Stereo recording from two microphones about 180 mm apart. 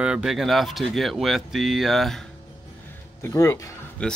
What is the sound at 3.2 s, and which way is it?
Speech, 15° left (ahead or behind).